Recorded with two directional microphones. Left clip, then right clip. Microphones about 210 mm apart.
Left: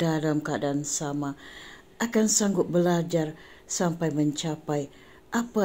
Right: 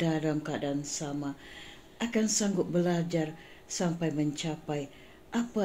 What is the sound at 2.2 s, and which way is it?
Speech, 20° left (ahead or behind).